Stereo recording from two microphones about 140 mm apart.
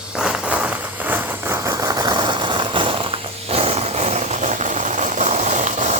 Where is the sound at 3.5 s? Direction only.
45° right (ahead or behind).